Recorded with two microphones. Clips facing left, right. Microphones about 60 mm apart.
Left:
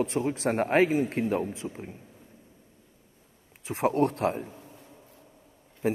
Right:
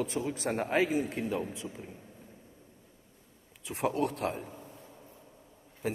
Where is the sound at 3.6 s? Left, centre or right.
Left.